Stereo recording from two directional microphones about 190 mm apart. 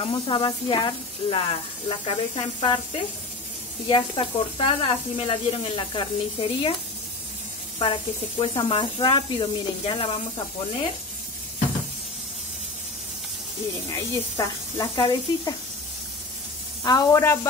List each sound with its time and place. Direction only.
0.0 s speech: 25° left (ahead or behind)
7.8 s speech: 30° left (ahead or behind)
13.8 s speech: 15° left (ahead or behind)
16.8 s speech: 20° left (ahead or behind)